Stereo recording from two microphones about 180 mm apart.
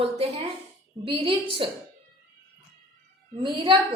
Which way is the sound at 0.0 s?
35° right (ahead or behind).